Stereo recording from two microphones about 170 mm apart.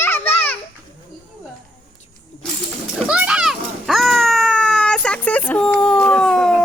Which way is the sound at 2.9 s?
5° right (ahead or behind).